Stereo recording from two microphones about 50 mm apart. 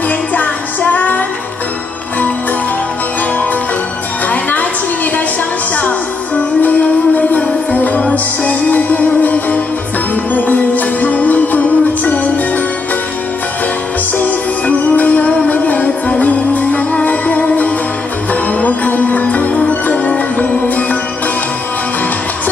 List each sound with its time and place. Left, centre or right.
0.3 s music: left
4.3 s music: left
6.6 s music: left
14.1 s music: left